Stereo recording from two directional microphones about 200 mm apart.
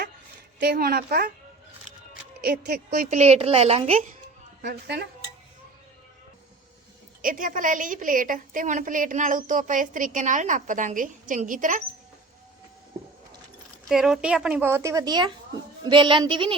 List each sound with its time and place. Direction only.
0.6 s speech: 50° right (ahead or behind)
2.4 s a woman's voice: 50° right (ahead or behind); by 4.1 s 30° right (ahead or behind)
4.6 s speech: 55° right (ahead or behind)
7.2 s a woman's voice: 40° right (ahead or behind)
13.8 s a woman's voice: centre (ahead or behind); by 16.6 s 25° right (ahead or behind)